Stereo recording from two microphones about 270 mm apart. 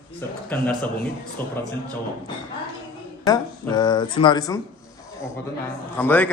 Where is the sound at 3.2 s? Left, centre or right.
Centre.